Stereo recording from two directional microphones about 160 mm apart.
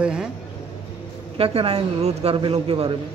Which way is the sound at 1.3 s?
35° right (ahead or behind).